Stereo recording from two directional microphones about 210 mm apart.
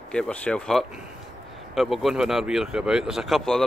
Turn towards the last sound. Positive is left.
turn(degrees=0)  # may be behind; listen again after turning